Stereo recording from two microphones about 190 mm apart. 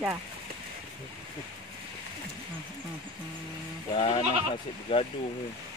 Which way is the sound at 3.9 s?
25° left (ahead or behind).